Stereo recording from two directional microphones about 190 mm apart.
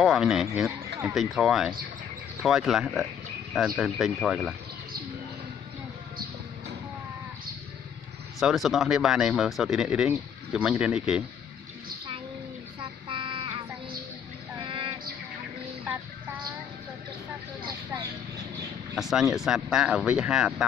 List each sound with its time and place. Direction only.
0.0 s a man's voice: centre (ahead or behind)
8.4 s speech: centre (ahead or behind)
13.1 s a sound: 25° right (ahead or behind)
14.6 s music: 30° right (ahead or behind)
18.9 s speech: centre (ahead or behind)